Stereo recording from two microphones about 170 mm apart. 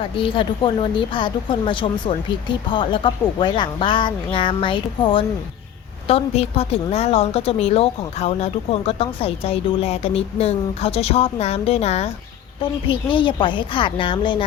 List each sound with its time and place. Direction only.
0.0 s a woman's voice: 30° left (ahead or behind)